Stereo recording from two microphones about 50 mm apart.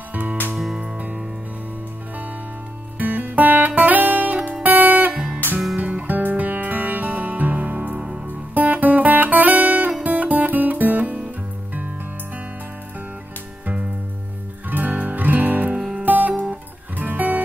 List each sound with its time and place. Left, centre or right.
0.1 s music: right
0.7 s music: right
3.0 s music: right
8.3 s guitar: right
10.0 s music: right
14.7 s music: right